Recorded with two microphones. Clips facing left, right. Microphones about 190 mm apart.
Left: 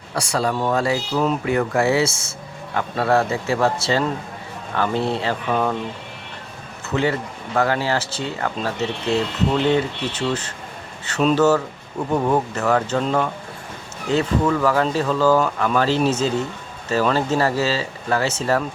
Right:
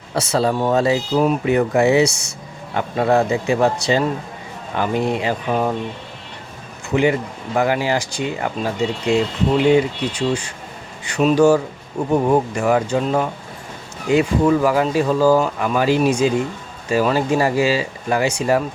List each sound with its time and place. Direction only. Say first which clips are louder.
0.1 s speech: right 4 dB; 25° right (ahead or behind)
6.9 s speech: right 4 dB; 15° right (ahead or behind)